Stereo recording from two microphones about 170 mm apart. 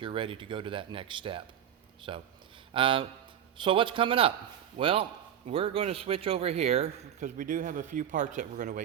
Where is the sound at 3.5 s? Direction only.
30° right (ahead or behind); by 8.8 s 45° right (ahead or behind).